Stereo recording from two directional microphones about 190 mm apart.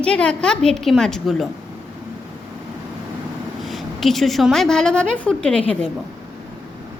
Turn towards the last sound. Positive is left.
turn(degrees=5)  # may be behind; listen again after turning